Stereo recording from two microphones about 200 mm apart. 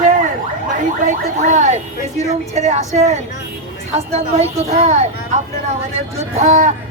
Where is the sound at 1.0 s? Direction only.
35° right (ahead or behind).